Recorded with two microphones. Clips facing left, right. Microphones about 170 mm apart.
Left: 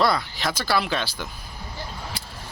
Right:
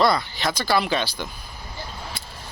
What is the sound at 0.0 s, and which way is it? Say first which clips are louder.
Speech: right 2 dB; 5° left (ahead or behind).